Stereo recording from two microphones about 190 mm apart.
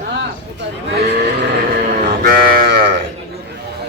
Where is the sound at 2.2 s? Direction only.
50° right (ahead or behind).